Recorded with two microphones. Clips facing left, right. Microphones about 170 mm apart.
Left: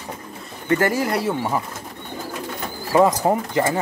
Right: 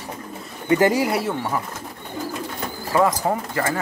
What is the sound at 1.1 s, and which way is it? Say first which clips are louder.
Speech: left 1 dB; centre (ahead or behind).